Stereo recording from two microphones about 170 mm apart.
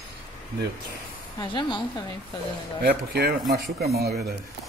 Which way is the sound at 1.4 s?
25° left (ahead or behind).